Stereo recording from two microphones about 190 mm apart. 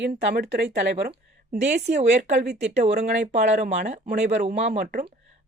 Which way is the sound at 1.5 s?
40° right (ahead or behind).